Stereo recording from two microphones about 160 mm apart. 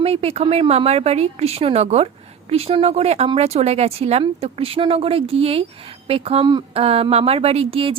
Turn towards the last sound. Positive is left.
turn(degrees=-35)  # may be behind; listen again after turning